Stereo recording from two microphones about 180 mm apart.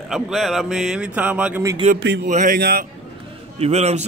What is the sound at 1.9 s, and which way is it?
Speech, 70° right (ahead or behind).